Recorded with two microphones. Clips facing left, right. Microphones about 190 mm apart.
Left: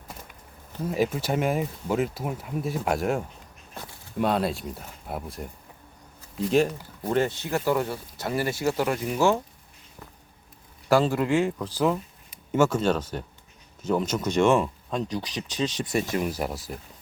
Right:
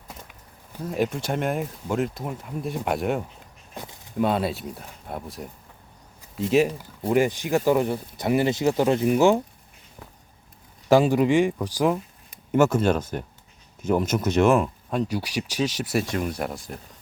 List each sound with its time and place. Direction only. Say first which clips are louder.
0.9 s speech: even; 5° left (ahead or behind)
3.8 s a sound: right 3 dB; 15° right (ahead or behind)
4.2 s speech: right 1 dB; centre (ahead or behind)
6.5 s speech: right 2 dB; 5° right (ahead or behind)
10.8 s speech: right 4 dB; 15° right (ahead or behind); by 16.7 s 5° left (ahead or behind)